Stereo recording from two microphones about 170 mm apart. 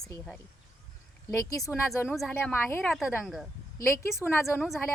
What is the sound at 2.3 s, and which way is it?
Speech, 10° left (ahead or behind).